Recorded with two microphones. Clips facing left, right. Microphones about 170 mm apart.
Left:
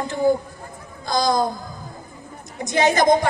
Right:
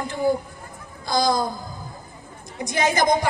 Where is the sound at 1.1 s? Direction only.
20° left (ahead or behind).